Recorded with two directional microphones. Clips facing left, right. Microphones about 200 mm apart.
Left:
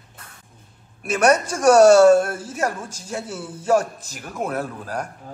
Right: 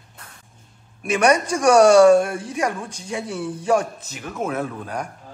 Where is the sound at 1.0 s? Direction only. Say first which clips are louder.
Even; 5° left (ahead or behind).